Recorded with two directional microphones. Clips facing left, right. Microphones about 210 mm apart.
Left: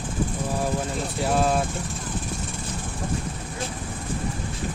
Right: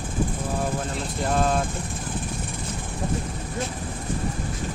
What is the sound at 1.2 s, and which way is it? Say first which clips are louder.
Speech: left 1 dB; 5° left (ahead or behind).